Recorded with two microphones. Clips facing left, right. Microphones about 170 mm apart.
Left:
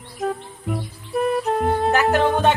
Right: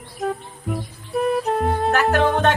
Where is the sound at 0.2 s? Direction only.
Centre (ahead or behind).